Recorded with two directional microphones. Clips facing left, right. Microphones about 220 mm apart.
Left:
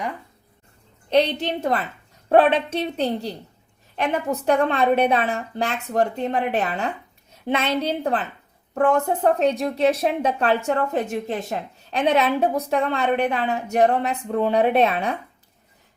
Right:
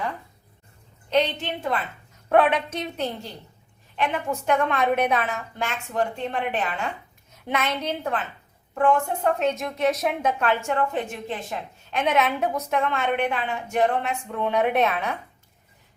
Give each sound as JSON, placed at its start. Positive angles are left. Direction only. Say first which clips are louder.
{"t": 1.1, "sound": "a woman's voice", "louder": "left 4 dB", "side_deg": 40}
{"t": 2.3, "sound": "a woman's voice", "louder": "left 3 dB", "side_deg": 30}